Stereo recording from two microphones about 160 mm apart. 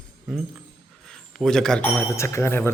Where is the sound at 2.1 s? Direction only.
15° left (ahead or behind).